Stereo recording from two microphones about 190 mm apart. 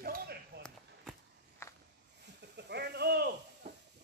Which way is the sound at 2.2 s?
65° right (ahead or behind).